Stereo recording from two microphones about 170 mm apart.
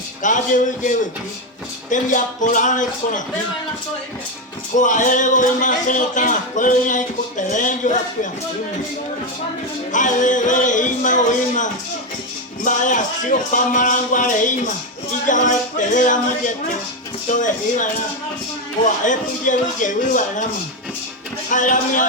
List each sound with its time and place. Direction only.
0.2 s a man's voice: 50° left (ahead or behind)
4.8 s a man's voice: 50° left (ahead or behind)
9.9 s a man's voice: 50° left (ahead or behind)
17.2 s a man's voice: 50° left (ahead or behind)
18.9 s a man's voice: 50° left (ahead or behind)
21.5 s a man's voice: 50° left (ahead or behind)